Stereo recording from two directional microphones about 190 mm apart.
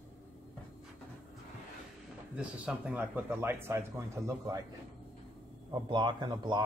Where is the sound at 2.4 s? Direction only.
5° right (ahead or behind).